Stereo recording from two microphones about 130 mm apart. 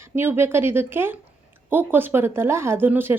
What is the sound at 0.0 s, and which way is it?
Speech, 20° right (ahead or behind).